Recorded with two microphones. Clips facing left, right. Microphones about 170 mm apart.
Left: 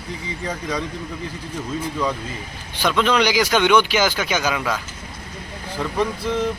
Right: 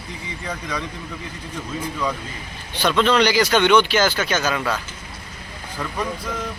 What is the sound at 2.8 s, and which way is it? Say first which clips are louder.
Speech: right 1 dB; 10° left (ahead or behind).